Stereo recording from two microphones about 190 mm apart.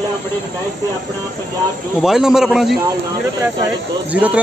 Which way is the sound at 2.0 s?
5° right (ahead or behind).